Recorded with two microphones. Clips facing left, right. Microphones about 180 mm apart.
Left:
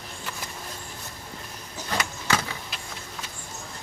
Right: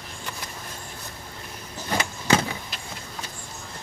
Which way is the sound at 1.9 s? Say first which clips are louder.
Right 5 dB; 25° right (ahead or behind).